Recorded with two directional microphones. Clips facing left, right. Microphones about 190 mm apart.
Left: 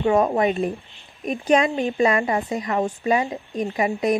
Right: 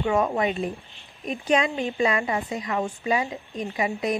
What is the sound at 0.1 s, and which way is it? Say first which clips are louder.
A woman's voice: left 4 dB; 40° left (ahead or behind).